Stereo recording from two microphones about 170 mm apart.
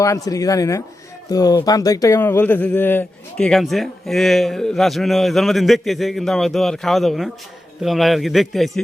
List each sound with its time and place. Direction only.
0.0 s speech: 20° left (ahead or behind); by 8.8 s centre (ahead or behind)